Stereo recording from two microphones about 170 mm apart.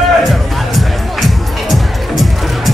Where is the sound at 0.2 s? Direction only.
Centre (ahead or behind).